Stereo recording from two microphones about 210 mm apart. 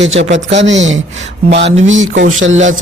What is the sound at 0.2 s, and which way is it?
Speech, 60° right (ahead or behind).